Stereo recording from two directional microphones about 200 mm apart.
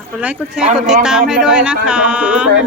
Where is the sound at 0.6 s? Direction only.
40° right (ahead or behind).